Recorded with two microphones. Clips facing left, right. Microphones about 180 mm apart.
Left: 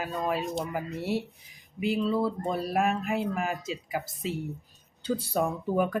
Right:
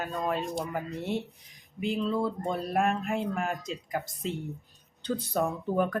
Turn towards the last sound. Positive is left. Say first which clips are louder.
# left 1 dB
turn(degrees=5)  # may be behind; listen again after turning